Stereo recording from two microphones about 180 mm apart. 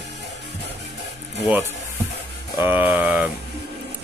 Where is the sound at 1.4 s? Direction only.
10° right (ahead or behind).